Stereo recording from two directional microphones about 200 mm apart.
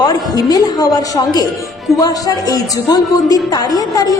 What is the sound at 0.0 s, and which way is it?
A woman's voice, 20° left (ahead or behind).